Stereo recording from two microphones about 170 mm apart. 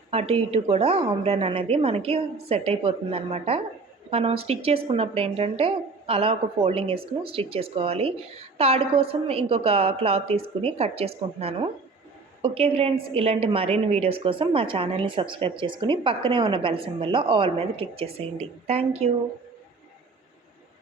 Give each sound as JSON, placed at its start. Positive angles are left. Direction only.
{"t": 0.1, "sound": "a woman's voice", "side_deg": -35}